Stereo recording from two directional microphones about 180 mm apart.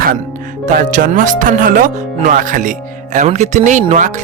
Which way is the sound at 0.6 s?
45° right (ahead or behind).